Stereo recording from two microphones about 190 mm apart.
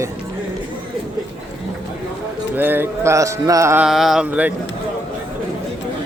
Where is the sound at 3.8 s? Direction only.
Centre (ahead or behind).